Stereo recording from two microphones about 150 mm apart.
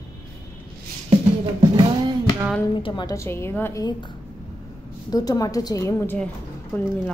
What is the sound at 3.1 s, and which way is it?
A woman's voice, 15° left (ahead or behind).